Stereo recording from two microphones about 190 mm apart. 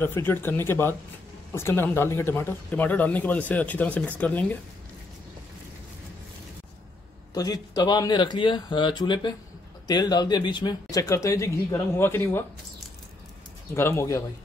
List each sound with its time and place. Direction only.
0.0 s speech: 10° left (ahead or behind)
7.3 s speech: 20° left (ahead or behind)
13.7 s speech: 15° left (ahead or behind)